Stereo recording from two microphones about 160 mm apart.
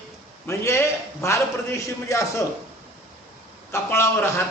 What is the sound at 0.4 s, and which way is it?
A man's voice, 15° left (ahead or behind).